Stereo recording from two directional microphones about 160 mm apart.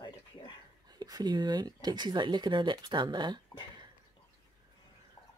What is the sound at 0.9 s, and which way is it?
Speech, 25° right (ahead or behind).